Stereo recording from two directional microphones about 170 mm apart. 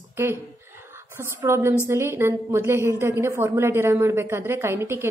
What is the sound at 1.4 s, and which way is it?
A woman's voice, 15° right (ahead or behind).